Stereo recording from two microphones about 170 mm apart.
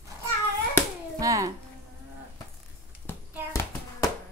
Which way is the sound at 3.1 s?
15° left (ahead or behind).